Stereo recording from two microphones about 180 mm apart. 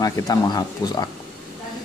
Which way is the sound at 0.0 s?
20° left (ahead or behind).